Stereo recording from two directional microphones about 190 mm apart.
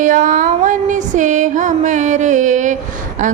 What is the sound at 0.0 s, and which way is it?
Female singing, 45° right (ahead or behind).